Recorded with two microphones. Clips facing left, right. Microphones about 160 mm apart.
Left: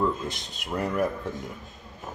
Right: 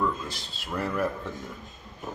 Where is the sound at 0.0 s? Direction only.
20° left (ahead or behind).